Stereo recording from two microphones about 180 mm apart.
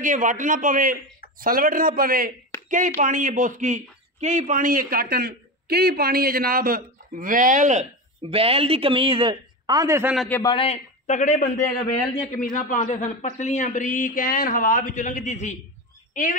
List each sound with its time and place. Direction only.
0.0 s a man's voice: 45° right (ahead or behind)
8.2 s speech: 30° right (ahead or behind); by 10.1 s 15° right (ahead or behind)
10.1 s a man's voice: 5° left (ahead or behind)
10.4 s a man's voice: 30° left (ahead or behind); by 16.3 s 45° left (ahead or behind)